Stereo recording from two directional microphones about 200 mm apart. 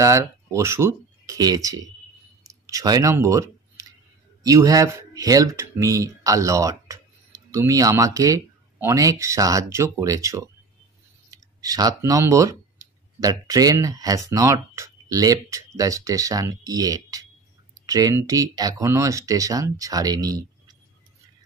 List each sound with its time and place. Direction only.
0.0 s speech: 15° right (ahead or behind)